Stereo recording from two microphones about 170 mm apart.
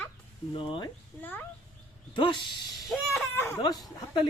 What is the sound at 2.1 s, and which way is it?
Speech, 30° left (ahead or behind).